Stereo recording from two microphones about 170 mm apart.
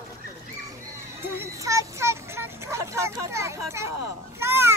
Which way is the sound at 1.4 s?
20° right (ahead or behind).